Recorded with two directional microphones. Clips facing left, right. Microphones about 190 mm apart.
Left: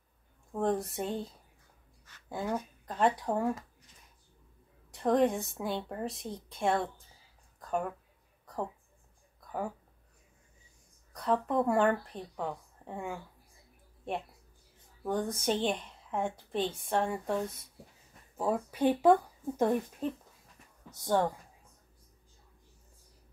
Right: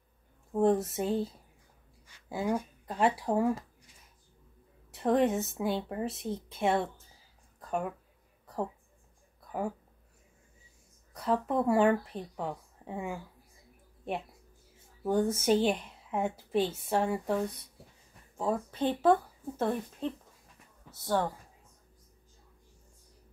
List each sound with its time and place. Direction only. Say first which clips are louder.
0.5 s speech: right 5 dB; 5° right (ahead or behind)
4.9 s speech: even; centre (ahead or behind)
11.1 s speech: even; 5° right (ahead or behind)
15.0 s speech: right 5 dB; 5° right (ahead or behind); by 21.4 s 15° left (ahead or behind)